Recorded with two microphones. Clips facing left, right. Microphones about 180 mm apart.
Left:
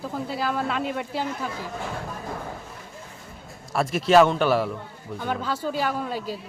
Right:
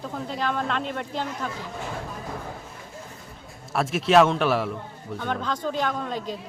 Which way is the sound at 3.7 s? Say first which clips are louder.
Left 1 dB; centre (ahead or behind).